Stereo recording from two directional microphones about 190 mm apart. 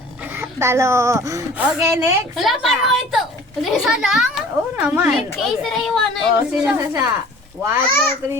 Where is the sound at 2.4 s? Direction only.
Centre (ahead or behind).